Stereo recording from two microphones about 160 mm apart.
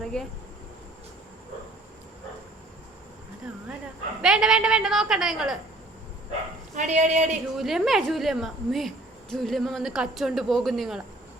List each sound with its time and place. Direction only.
0.1 s speech: 5° left (ahead or behind)
4.2 s speech: 5° right (ahead or behind)
6.7 s speech: 45° right (ahead or behind)
7.5 s speech: centre (ahead or behind)